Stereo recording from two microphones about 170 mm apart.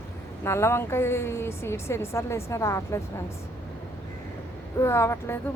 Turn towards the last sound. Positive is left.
turn(degrees=15)  # may be behind; listen again after turning